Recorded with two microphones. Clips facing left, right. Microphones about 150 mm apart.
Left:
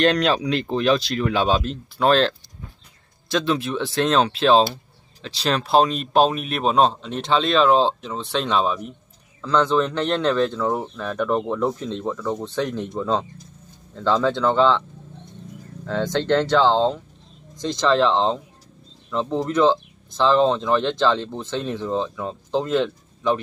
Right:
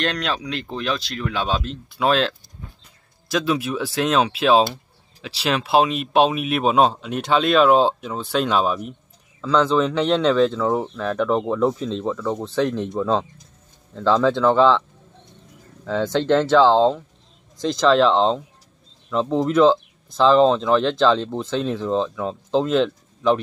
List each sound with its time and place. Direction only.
0.0 s speech: centre (ahead or behind)
15.8 s speech: centre (ahead or behind)